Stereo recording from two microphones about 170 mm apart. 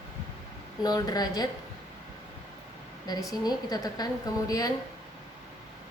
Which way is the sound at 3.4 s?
25° left (ahead or behind).